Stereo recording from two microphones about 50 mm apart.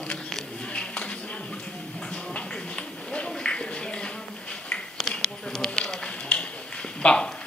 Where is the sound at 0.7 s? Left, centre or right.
Left.